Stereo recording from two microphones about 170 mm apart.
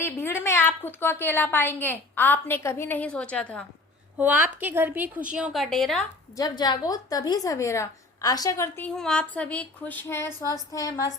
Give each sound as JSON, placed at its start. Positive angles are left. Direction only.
{"t": 0.0, "sound": "a woman's voice", "side_deg": 15}
{"t": 4.2, "sound": "a woman's voice", "side_deg": -10}
{"t": 6.3, "sound": "a woman's voice", "side_deg": 25}
{"t": 9.0, "sound": "a woman's voice", "side_deg": 5}